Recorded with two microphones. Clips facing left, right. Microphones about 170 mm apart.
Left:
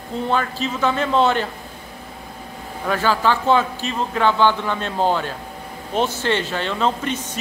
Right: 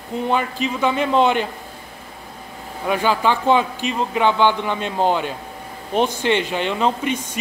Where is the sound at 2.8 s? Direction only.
15° right (ahead or behind).